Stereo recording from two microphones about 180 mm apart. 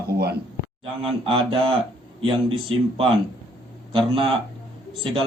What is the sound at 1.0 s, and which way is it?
Speech, 30° right (ahead or behind).